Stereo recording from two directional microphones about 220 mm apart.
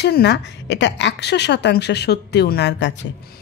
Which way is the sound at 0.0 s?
50° left (ahead or behind).